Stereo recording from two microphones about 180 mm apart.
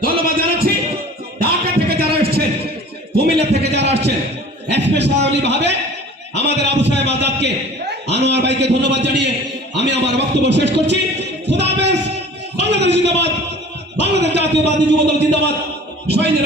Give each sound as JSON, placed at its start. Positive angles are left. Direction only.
{"t": 0.0, "sound": "a sound", "side_deg": -55}
{"t": 1.4, "sound": "music", "side_deg": -60}
{"t": 3.2, "sound": "a man's voice", "side_deg": -65}